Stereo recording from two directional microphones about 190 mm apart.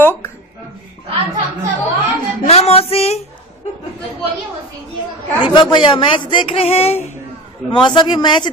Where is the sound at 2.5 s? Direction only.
35° left (ahead or behind).